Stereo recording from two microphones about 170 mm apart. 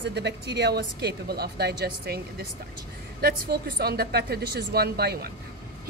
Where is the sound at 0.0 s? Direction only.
80° right.